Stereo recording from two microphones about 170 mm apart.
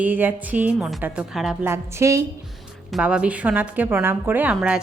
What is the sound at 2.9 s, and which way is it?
Speech, 5° right (ahead or behind).